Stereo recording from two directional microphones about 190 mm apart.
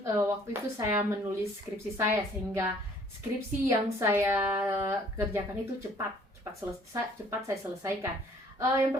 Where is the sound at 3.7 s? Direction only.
15° right (ahead or behind).